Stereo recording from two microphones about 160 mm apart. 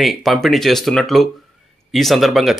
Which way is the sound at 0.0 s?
Centre (ahead or behind).